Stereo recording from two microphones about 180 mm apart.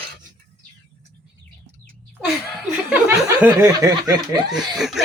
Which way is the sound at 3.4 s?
15° right (ahead or behind).